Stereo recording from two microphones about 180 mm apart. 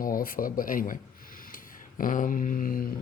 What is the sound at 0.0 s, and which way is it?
Speech, 50° left (ahead or behind).